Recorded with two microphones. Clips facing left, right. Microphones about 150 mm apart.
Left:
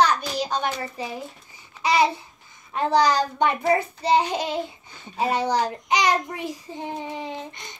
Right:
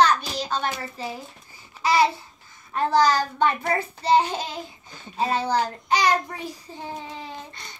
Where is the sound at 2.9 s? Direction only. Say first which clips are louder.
Even; 15° left (ahead or behind).